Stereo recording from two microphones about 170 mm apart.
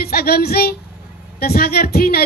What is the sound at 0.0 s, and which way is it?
Speech, 65° left (ahead or behind).